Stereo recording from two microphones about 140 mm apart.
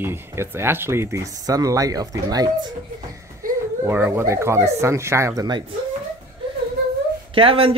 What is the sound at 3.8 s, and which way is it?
Speech, 15° right (ahead or behind).